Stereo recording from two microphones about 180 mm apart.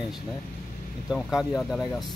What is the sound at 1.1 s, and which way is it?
Speech, centre (ahead or behind).